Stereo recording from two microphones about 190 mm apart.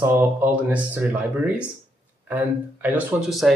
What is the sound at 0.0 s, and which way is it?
Speech, 10° right (ahead or behind).